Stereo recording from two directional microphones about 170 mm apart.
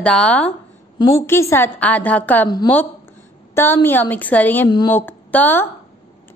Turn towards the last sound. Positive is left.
turn(degrees=10)  # may be behind; listen again after turning